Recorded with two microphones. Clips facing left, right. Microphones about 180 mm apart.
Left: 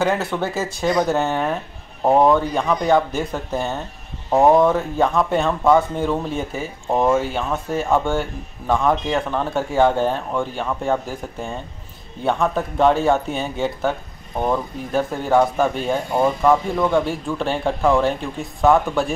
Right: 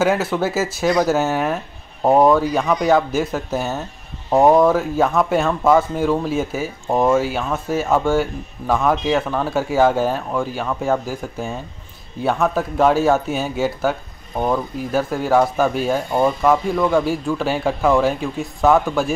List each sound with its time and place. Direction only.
0.0 s speech: 5° right (ahead or behind)